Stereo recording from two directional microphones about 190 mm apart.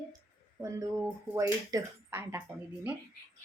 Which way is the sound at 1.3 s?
15° right (ahead or behind).